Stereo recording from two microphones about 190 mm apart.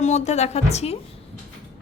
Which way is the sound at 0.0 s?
35° left (ahead or behind).